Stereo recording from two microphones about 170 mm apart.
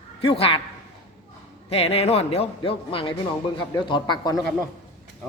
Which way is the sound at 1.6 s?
35° left (ahead or behind).